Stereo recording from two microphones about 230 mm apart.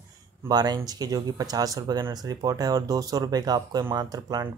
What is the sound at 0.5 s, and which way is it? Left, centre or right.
Speech, centre.